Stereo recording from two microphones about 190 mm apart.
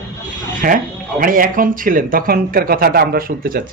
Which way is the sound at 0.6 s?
45° right (ahead or behind).